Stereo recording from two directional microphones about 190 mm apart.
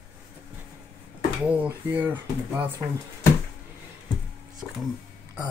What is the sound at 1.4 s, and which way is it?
Speech, 5° right (ahead or behind).